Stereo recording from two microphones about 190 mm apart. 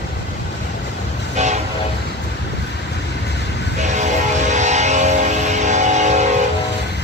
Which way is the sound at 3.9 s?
40° right (ahead or behind).